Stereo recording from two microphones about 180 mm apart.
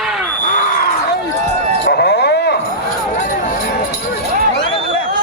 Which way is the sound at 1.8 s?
65° left (ahead or behind).